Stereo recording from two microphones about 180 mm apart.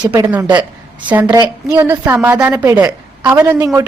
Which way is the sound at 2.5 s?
20° right (ahead or behind).